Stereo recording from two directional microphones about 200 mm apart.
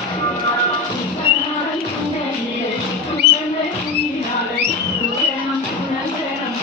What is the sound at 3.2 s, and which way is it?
Music, 55° right (ahead or behind).